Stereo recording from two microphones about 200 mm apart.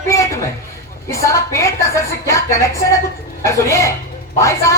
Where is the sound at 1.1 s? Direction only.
15° left (ahead or behind).